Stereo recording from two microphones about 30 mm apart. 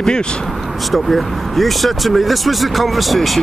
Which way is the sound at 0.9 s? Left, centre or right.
Centre.